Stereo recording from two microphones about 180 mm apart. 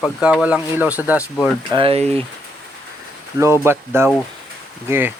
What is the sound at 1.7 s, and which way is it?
Speech, 30° right (ahead or behind).